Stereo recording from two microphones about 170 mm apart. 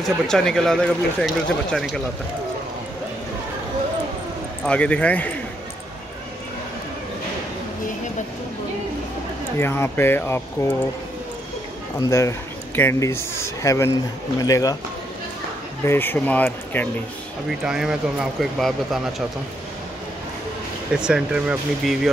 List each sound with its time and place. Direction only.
0.0 s speech: 5° left (ahead or behind)
4.6 s speech: 5° left (ahead or behind)
9.6 s speech: 15° left (ahead or behind)
12.0 s speech: 15° left (ahead or behind)
15.8 s speech: 15° left (ahead or behind)
17.5 s speech: 5° right (ahead or behind)
20.9 s speech: 5° right (ahead or behind)